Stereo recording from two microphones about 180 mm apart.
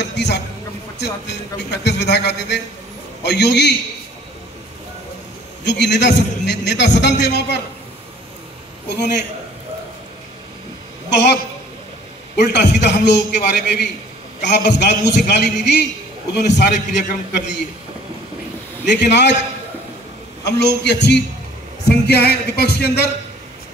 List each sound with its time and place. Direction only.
0.0 s a sound: 70° left (ahead or behind)
0.9 s a man's voice: 70° left (ahead or behind)
5.6 s a man's voice: 75° left (ahead or behind)
11.1 s a woman's voice: 70° left (ahead or behind)
12.4 s a man's voice: 70° left (ahead or behind)
18.9 s a man's voice: 75° left (ahead or behind)
20.4 s a man's voice: 70° left (ahead or behind)
21.8 s a sound: 65° left (ahead or behind)